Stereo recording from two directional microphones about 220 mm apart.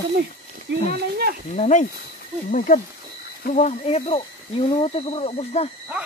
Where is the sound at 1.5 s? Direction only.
35° left (ahead or behind).